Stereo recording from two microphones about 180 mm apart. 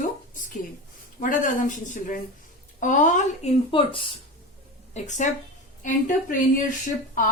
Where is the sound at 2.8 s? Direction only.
45° left (ahead or behind).